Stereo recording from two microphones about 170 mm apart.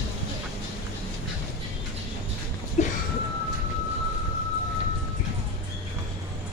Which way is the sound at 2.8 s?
45° left (ahead or behind).